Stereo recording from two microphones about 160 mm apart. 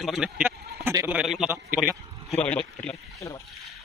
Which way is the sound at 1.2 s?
5° right (ahead or behind).